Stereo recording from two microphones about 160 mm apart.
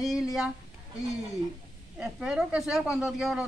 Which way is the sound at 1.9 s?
5° right (ahead or behind).